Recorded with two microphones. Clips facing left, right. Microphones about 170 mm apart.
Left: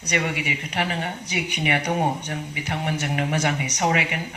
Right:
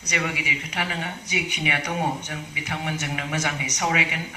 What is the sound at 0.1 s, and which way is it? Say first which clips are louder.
Speech: left 3 dB; 50° left (ahead or behind).